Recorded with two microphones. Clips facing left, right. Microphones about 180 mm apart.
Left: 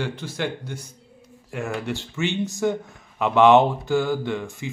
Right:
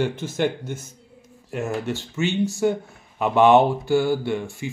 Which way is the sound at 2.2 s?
15° left (ahead or behind).